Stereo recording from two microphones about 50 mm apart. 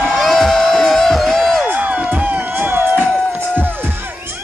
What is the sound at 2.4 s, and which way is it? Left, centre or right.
Music, right.